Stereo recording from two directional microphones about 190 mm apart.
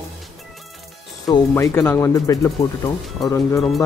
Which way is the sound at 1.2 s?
15° left (ahead or behind).